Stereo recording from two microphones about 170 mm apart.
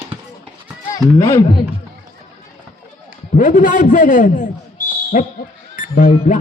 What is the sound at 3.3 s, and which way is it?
A man's voice, 50° left (ahead or behind).